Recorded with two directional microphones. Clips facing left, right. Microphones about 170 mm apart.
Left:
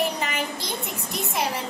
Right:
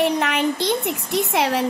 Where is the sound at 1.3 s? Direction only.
80° right.